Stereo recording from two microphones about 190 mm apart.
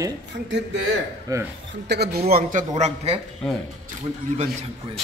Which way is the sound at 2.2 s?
50° right (ahead or behind).